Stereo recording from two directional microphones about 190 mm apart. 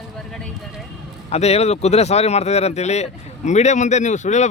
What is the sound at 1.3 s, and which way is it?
Speech, 35° left (ahead or behind).